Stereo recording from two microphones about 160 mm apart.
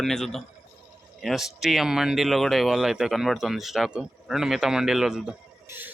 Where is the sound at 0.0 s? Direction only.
5° left (ahead or behind).